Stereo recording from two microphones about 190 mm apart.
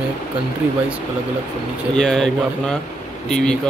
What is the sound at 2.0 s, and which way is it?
Speech, 5° left (ahead or behind).